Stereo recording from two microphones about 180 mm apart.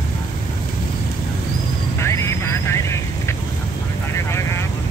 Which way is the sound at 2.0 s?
15° left (ahead or behind).